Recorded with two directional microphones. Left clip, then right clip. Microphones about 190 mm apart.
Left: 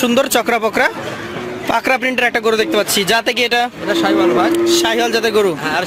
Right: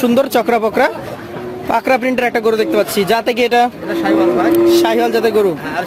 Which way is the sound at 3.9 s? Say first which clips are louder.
Left 4 dB; 20° left (ahead or behind).